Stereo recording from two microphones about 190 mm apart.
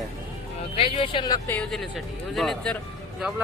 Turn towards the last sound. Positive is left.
turn(degrees=0)  # may be behind; listen again after turning